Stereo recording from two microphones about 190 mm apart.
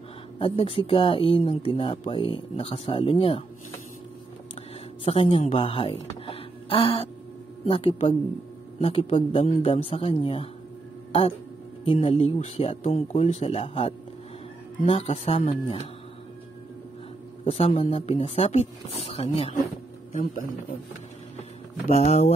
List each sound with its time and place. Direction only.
0.4 s speech: 30° left (ahead or behind)
5.0 s speech: 30° left (ahead or behind)
11.8 s speech: 30° left (ahead or behind)
17.5 s speech: 30° left (ahead or behind)
20.1 s speech: 45° left (ahead or behind)
21.9 s speech: 35° left (ahead or behind)